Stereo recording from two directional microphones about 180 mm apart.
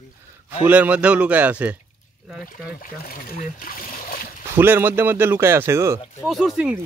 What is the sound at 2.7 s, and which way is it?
Speech, 55° left (ahead or behind).